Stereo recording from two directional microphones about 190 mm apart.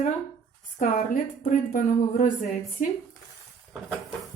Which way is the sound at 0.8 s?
45° left (ahead or behind).